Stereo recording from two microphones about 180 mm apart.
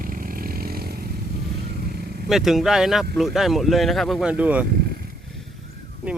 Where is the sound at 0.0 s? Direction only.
50° right (ahead or behind).